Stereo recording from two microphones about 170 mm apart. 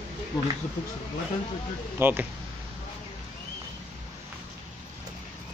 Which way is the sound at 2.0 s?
10° right (ahead or behind).